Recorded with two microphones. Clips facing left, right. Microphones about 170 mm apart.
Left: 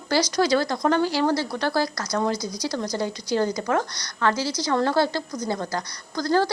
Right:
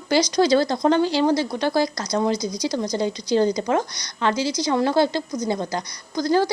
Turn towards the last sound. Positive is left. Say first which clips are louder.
# right 2 dB
turn(degrees=-15)  # may be behind; listen again after turning